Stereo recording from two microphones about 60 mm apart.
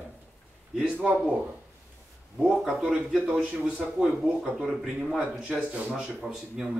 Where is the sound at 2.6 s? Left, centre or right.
Centre.